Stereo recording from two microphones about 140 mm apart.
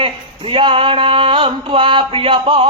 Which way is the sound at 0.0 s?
40° right (ahead or behind).